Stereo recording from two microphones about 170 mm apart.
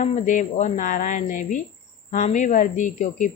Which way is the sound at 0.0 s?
45° left (ahead or behind).